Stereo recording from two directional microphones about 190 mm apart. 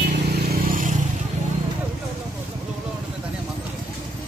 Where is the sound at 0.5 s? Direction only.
45° right (ahead or behind).